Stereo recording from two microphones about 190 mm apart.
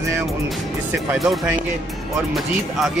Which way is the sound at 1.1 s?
Centre (ahead or behind).